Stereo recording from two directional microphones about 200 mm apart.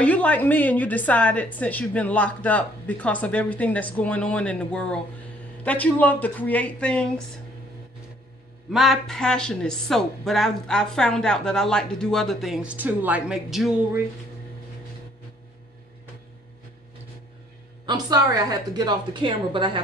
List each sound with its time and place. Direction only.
0.0 s a woman's voice: 5° left (ahead or behind)
8.7 s speech: centre (ahead or behind)
17.8 s a woman's voice: 20° right (ahead or behind)